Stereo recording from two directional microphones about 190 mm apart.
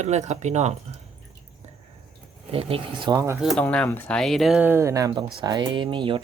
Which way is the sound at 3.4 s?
Centre (ahead or behind).